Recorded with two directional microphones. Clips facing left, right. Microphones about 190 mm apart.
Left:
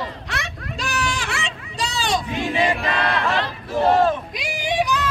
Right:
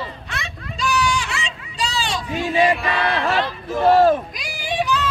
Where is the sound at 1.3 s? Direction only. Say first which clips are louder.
Left 1 dB; 50° left (ahead or behind).